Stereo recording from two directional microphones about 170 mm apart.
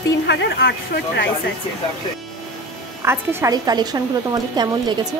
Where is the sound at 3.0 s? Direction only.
15° right (ahead or behind).